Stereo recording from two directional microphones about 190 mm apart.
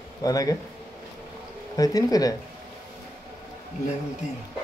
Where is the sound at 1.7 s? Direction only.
20° left (ahead or behind).